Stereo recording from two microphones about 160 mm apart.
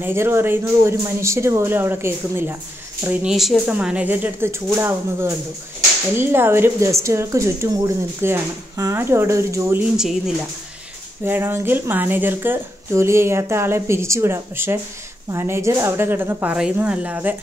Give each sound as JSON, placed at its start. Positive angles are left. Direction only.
{"t": 0.0, "sound": "speech", "side_deg": -15}
{"t": 9.9, "sound": "speech", "side_deg": -5}
{"t": 11.2, "sound": "speech", "side_deg": -15}